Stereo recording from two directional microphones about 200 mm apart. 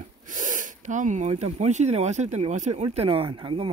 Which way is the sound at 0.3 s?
40° right (ahead or behind).